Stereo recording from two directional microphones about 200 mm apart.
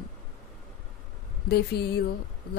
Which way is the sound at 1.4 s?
55° left (ahead or behind).